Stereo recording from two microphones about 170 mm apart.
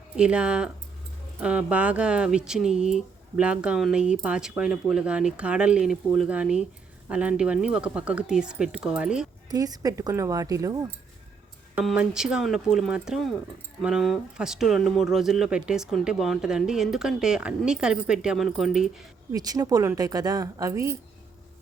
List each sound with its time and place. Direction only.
0.2 s speech: 5° right (ahead or behind)
9.5 s speech: 20° right (ahead or behind)
11.7 s speech: 5° right (ahead or behind)
19.3 s speech: 20° right (ahead or behind)